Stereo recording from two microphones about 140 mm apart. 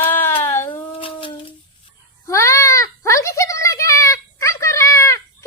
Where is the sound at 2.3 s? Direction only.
20° left (ahead or behind).